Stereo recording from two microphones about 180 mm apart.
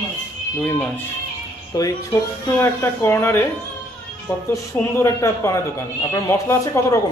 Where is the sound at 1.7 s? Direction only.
20° left (ahead or behind).